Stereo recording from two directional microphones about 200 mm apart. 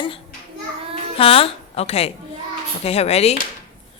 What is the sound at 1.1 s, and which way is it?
A woman's voice, 30° left (ahead or behind).